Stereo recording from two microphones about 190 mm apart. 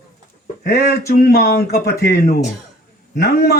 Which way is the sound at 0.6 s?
55° left (ahead or behind).